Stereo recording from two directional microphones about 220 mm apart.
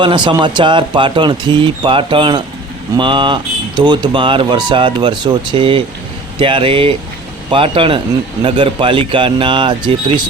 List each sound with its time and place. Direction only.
0.0 s speech: 20° right (ahead or behind)